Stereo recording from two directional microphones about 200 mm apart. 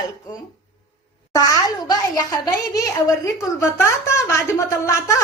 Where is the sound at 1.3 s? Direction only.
20° left (ahead or behind).